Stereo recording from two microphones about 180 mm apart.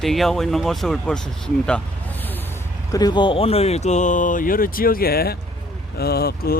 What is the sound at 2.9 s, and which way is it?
Speech, 20° left (ahead or behind).